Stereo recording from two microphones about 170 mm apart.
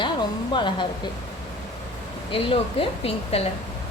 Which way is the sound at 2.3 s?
35° left (ahead or behind).